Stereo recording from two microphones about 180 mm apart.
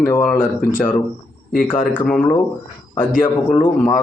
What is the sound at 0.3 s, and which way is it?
Speech, 45° left (ahead or behind).